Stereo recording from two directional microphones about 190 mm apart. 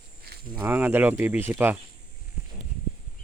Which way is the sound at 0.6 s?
10° right (ahead or behind).